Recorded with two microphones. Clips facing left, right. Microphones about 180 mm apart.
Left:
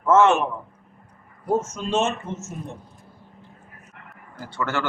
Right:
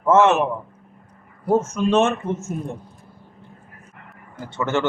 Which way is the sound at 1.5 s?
60° right (ahead or behind).